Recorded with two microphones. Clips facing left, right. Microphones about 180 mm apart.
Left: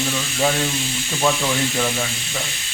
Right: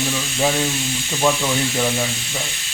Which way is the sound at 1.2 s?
5° right (ahead or behind).